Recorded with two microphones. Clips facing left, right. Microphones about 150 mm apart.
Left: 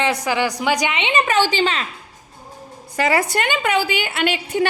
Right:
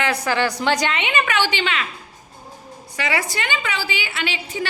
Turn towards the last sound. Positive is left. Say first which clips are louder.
# left 7 dB
turn(degrees=55)  # may be behind; listen again after turning